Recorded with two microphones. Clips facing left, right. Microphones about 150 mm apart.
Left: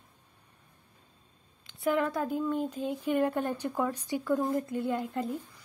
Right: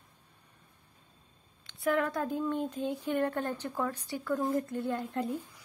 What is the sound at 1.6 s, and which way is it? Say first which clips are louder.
Speech: left 1 dB; centre (ahead or behind).